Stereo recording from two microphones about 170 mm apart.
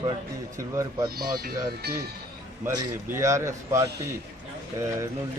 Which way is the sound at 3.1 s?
15° right (ahead or behind).